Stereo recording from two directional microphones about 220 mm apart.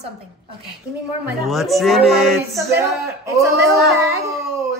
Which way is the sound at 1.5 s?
Centre (ahead or behind).